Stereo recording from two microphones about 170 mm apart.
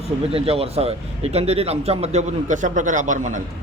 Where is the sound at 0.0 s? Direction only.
35° right (ahead or behind).